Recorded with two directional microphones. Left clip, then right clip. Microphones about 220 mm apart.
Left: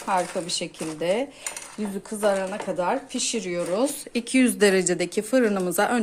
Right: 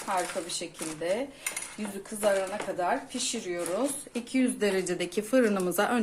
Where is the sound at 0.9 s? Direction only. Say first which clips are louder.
Left 6 dB; 45° left (ahead or behind).